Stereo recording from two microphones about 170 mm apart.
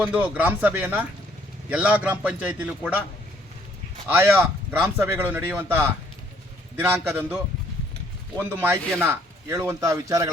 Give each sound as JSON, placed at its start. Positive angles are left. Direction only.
{"t": 0.0, "sound": "speech", "side_deg": -10}
{"t": 4.1, "sound": "speech", "side_deg": -10}
{"t": 8.4, "sound": "speech", "side_deg": -10}